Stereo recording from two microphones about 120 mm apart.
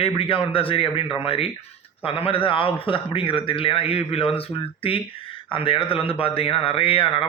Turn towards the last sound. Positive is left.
turn(degrees=45)  # may be behind; listen again after turning